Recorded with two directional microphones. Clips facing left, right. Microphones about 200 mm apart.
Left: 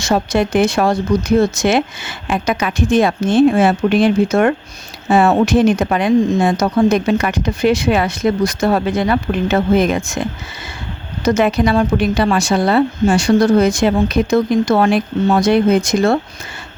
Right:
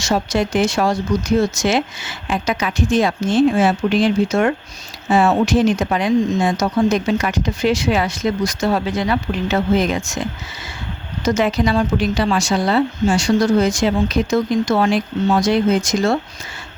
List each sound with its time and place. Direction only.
0.0 s speech: 55° left (ahead or behind)
11.3 s speech: 55° left (ahead or behind)